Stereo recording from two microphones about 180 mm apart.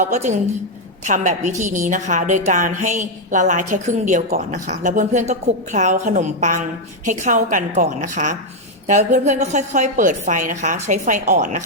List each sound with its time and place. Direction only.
0.0 s a woman's voice: 40° right (ahead or behind)